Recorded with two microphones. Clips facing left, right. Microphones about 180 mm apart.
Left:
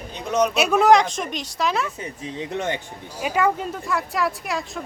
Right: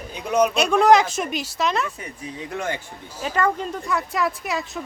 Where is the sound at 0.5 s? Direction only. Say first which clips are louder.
Left 1 dB; 5° left (ahead or behind).